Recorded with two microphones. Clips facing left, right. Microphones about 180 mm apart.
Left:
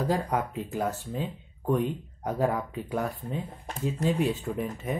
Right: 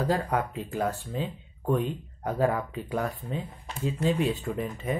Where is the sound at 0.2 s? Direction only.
10° left (ahead or behind).